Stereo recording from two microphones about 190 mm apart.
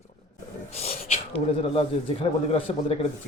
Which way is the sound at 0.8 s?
35° left (ahead or behind).